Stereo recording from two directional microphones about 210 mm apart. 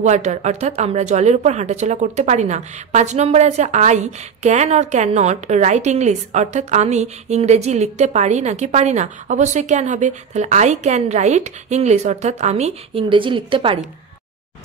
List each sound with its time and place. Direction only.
0.0 s a woman's voice: 35° right (ahead or behind)